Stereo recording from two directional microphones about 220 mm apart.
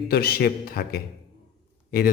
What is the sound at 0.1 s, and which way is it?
A man's voice, 45° left (ahead or behind).